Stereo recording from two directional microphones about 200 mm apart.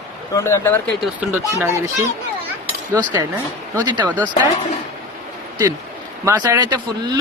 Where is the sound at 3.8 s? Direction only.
20° right (ahead or behind).